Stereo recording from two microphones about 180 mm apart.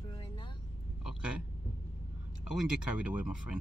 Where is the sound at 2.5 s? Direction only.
5° right (ahead or behind).